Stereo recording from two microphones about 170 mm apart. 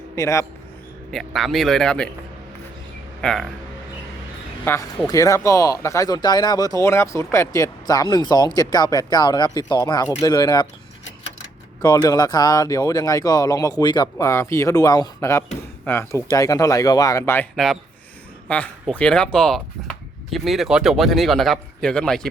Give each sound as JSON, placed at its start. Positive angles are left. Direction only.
{"t": 0.2, "sound": "speech", "side_deg": 20}
{"t": 1.1, "sound": "speech", "side_deg": 0}
{"t": 3.2, "sound": "speech", "side_deg": 5}
{"t": 4.6, "sound": "speech", "side_deg": 15}
{"t": 11.8, "sound": "speech", "side_deg": 20}
{"t": 18.4, "sound": "speech", "side_deg": 10}